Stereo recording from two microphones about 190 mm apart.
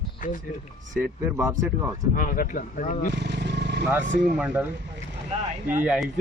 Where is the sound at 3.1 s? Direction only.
65° right (ahead or behind).